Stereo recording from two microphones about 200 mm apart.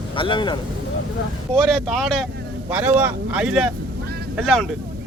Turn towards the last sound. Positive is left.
turn(degrees=0)  # may be behind; listen again after turning